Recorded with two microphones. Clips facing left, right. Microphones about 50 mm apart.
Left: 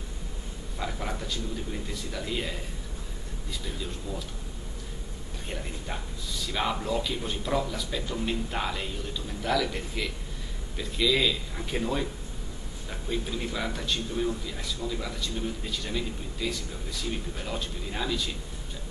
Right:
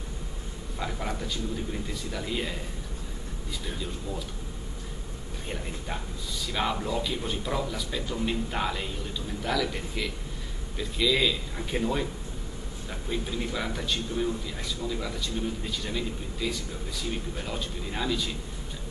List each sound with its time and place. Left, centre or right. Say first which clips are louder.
0.7 s speech: right 1 dB; centre
6.4 s a man's voice: even; centre
13.1 s a man's voice: even; centre